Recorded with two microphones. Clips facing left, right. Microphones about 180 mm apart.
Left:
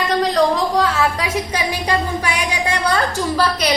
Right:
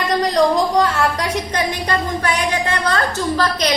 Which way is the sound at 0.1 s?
Centre (ahead or behind).